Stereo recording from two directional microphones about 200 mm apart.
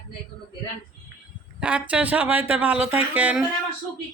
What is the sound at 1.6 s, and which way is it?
Speech, 5° right (ahead or behind).